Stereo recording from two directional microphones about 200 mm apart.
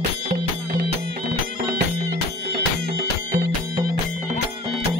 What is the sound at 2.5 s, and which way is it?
Music, 55° right (ahead or behind).